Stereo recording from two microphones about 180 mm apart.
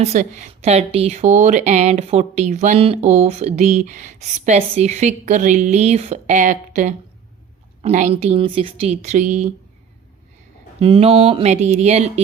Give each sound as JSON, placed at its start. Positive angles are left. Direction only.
{"t": 0.0, "sound": "a woman's voice", "side_deg": -40}
{"t": 10.8, "sound": "a woman's voice", "side_deg": -30}